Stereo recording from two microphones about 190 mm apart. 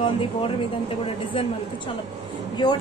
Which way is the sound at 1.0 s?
30° left (ahead or behind).